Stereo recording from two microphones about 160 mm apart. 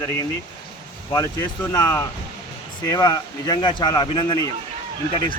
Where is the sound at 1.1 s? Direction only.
20° left (ahead or behind).